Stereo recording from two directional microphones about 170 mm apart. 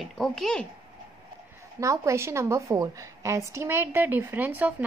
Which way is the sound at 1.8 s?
15° right (ahead or behind).